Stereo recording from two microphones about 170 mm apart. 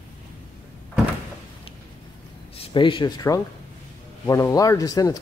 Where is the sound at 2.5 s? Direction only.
30° left (ahead or behind).